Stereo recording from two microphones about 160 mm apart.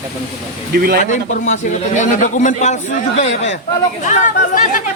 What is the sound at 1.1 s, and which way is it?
A man's voice, 50° left (ahead or behind).